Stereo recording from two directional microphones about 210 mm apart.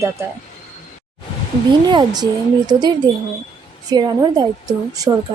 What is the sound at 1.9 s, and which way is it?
A woman's voice, 20° right (ahead or behind).